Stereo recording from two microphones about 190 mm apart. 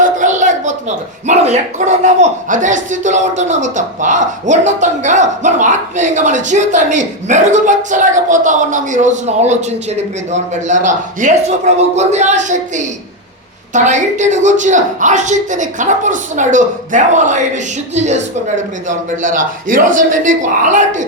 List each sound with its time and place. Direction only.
0.0 s a man's voice: 40° right (ahead or behind)